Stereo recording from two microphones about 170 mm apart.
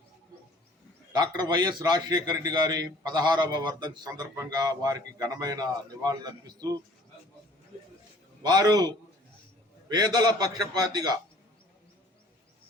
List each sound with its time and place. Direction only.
1.1 s a man's voice: 25° right (ahead or behind)
8.4 s a man's voice: 25° right (ahead or behind)
9.9 s a man's voice: 25° right (ahead or behind)